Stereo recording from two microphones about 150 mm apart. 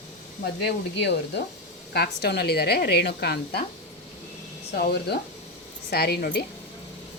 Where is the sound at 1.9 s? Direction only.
90° left.